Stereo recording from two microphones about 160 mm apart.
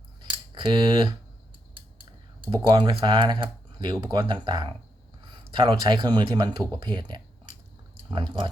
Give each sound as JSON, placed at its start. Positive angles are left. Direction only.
{"t": 0.2, "sound": "scissors", "side_deg": -30}
{"t": 2.5, "sound": "speech", "side_deg": -25}